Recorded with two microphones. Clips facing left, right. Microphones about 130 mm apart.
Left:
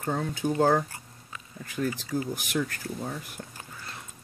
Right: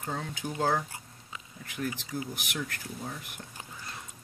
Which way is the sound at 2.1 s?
40° left (ahead or behind).